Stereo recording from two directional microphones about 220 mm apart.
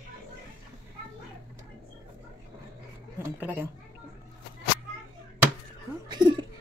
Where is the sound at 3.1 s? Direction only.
10° right (ahead or behind).